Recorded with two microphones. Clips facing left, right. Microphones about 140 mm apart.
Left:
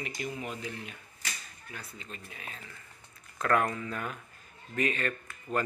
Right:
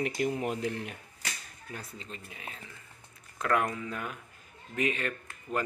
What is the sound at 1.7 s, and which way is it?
Speech, 30° right (ahead or behind).